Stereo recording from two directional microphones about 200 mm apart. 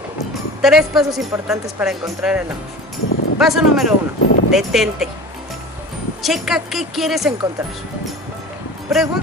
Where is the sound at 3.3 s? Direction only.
Centre (ahead or behind).